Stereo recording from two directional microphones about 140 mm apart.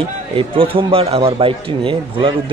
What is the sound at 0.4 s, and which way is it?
A man's voice, 40° right (ahead or behind).